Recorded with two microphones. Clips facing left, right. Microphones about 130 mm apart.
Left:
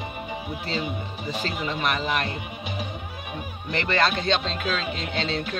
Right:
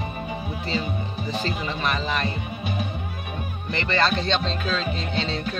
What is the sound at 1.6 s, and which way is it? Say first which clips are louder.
Speech: even; 10° left (ahead or behind).